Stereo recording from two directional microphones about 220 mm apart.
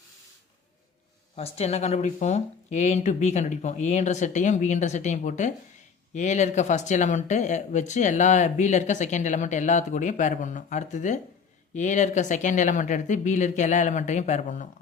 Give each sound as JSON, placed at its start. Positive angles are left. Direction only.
{"t": 1.4, "sound": "speech", "side_deg": 30}